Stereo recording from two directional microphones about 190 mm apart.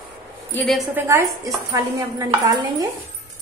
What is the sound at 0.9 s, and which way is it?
A woman's voice, 15° right (ahead or behind).